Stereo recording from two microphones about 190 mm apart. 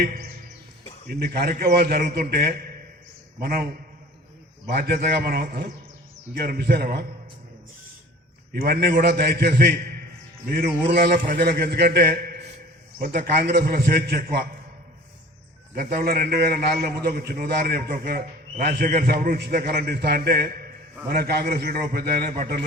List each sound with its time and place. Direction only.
0.0 s music: 55° right (ahead or behind)
1.0 s a man's voice: 55° right (ahead or behind)
4.7 s a man's voice: 50° right (ahead or behind)
8.6 s a man's voice: 55° right (ahead or behind)
15.7 s a man's voice: 50° right (ahead or behind)